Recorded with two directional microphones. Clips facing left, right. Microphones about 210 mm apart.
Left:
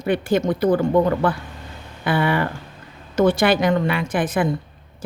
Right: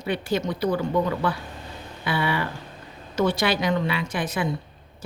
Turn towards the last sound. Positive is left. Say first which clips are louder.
# left 6 dB
turn(degrees=50)  # may be behind; listen again after turning